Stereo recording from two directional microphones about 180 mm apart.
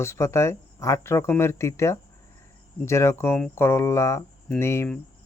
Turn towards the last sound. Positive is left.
turn(degrees=15)  # may be behind; listen again after turning